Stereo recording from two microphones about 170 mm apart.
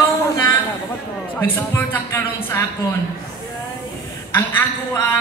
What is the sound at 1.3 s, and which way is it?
Speech, 10° left (ahead or behind).